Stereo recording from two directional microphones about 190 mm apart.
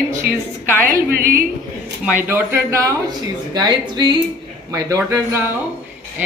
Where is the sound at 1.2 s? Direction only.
50° right (ahead or behind).